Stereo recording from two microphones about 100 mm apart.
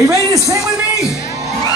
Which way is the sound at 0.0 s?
30° right (ahead or behind).